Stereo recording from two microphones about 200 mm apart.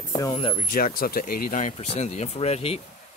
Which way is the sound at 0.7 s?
45° left (ahead or behind).